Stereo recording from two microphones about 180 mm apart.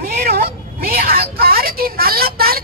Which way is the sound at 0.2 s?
60° right (ahead or behind).